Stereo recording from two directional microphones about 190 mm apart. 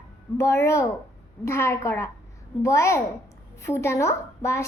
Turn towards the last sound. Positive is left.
turn(degrees=15)  # may be behind; listen again after turning